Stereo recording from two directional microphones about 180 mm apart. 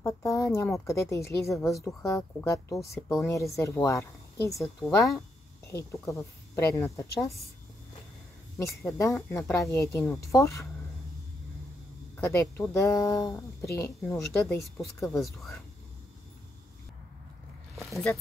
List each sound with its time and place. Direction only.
0.0 s a woman's voice: 15° left (ahead or behind)
4.6 s speech: centre (ahead or behind)
5.7 s a woman's voice: 15° left (ahead or behind)
8.5 s a woman's voice: 15° left (ahead or behind)
12.2 s a woman's voice: 15° left (ahead or behind)
17.9 s speech: centre (ahead or behind)